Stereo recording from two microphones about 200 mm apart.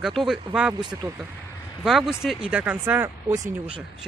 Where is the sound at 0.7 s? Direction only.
20° right (ahead or behind).